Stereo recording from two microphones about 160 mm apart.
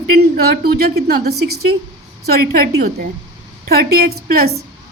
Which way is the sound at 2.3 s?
70° right (ahead or behind).